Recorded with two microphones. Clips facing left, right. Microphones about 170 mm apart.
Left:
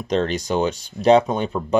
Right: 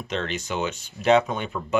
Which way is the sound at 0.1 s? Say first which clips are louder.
Left 8 dB; 35° left (ahead or behind).